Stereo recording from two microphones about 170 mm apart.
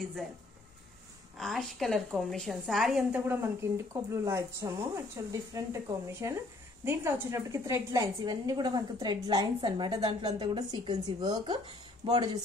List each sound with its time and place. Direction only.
1.4 s a woman's voice: centre (ahead or behind); by 12.2 s 30° right (ahead or behind)